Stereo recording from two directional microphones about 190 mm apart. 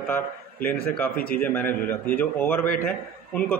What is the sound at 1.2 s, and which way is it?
Speech, 50° left (ahead or behind).